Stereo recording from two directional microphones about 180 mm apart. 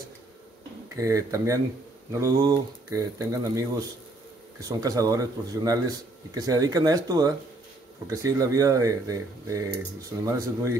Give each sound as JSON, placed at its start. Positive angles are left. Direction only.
{"t": 0.9, "sound": "speech", "side_deg": -20}